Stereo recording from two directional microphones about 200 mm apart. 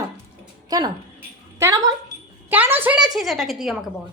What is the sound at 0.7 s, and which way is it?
A woman's voice, 20° right (ahead or behind).